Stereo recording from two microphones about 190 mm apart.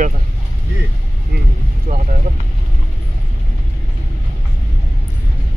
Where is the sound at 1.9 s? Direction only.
45° right (ahead or behind).